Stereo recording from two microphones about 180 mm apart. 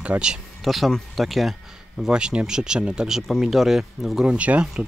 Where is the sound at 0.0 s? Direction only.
5° right (ahead or behind).